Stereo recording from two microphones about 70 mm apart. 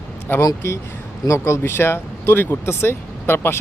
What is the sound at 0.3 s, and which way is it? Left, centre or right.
Speech, left.